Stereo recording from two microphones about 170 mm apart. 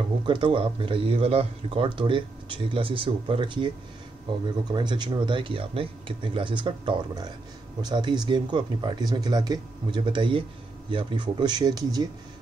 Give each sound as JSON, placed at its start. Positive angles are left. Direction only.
{"t": 0.3, "sound": "speech", "side_deg": -30}
{"t": 4.7, "sound": "speech", "side_deg": -25}